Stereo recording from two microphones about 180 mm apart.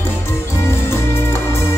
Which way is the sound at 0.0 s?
15° left (ahead or behind).